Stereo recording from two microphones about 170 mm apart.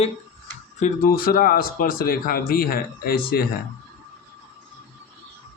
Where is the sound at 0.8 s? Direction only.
55° left (ahead or behind).